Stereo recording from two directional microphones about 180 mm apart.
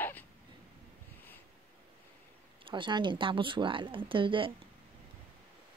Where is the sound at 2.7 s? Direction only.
25° right (ahead or behind).